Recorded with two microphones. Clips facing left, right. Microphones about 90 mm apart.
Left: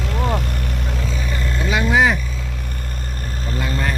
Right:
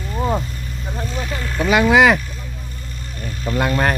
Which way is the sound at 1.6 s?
70° right (ahead or behind).